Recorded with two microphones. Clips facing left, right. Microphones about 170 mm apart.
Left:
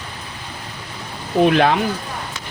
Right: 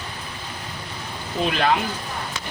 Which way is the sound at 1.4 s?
60° left (ahead or behind).